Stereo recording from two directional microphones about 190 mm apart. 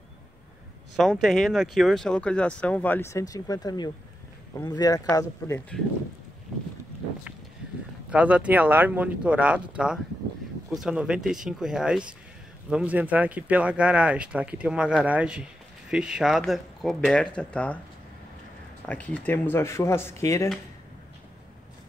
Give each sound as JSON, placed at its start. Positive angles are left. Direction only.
{"t": 0.9, "sound": "speech", "side_deg": 0}
{"t": 8.1, "sound": "speech", "side_deg": -5}
{"t": 18.9, "sound": "speech", "side_deg": 5}